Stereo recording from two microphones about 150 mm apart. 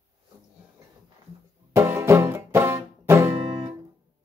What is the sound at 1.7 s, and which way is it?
Music, 20° right (ahead or behind).